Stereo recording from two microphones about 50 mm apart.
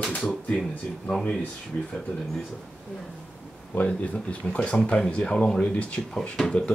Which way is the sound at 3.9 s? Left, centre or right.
Left.